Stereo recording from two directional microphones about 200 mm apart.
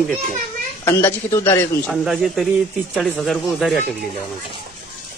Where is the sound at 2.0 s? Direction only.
Centre (ahead or behind).